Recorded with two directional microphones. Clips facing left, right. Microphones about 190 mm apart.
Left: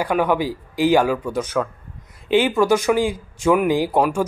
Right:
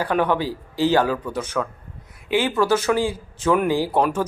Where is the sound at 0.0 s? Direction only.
10° left (ahead or behind).